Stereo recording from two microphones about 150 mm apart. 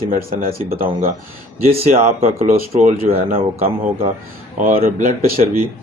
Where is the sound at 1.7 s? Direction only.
40° right (ahead or behind).